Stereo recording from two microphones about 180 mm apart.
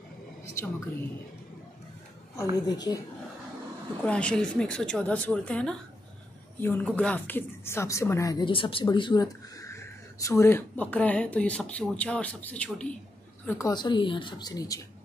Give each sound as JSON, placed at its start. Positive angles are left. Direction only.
{"t": 2.5, "sound": "speech", "side_deg": 20}
{"t": 4.0, "sound": "speech", "side_deg": 5}
{"t": 13.5, "sound": "speech", "side_deg": 20}